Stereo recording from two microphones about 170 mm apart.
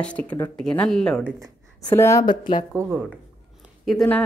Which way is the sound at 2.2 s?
25° left (ahead or behind).